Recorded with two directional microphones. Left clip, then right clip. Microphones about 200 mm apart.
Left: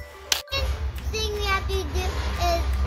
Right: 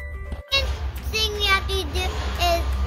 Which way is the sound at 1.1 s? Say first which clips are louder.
Right 5 dB; 10° right (ahead or behind).